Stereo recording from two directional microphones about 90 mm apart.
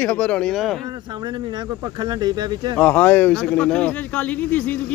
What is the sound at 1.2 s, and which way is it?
Speech, 50° right (ahead or behind).